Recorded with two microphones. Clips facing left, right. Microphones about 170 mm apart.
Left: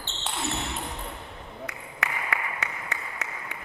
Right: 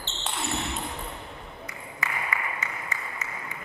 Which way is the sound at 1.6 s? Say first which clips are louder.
Left 2 dB; 70° left (ahead or behind).